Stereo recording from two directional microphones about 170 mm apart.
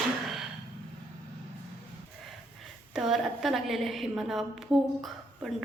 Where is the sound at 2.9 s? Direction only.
Centre (ahead or behind).